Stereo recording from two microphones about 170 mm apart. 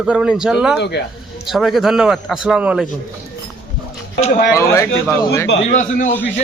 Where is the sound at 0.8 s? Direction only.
80° left.